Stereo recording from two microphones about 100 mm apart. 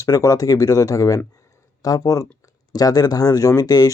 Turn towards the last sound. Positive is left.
turn(degrees=35)  # may be behind; listen again after turning